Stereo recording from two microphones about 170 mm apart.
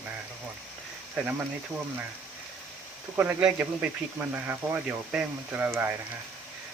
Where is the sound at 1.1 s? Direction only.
10° right (ahead or behind).